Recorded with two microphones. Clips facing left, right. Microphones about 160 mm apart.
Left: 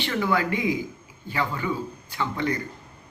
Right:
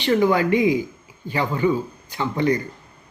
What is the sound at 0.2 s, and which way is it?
Speech, 20° right (ahead or behind).